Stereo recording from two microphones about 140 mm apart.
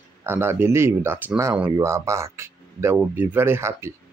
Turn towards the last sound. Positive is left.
turn(degrees=-20)  # may be behind; listen again after turning